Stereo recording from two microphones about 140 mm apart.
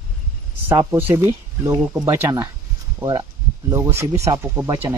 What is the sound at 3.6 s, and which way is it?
Speech, 30° right (ahead or behind).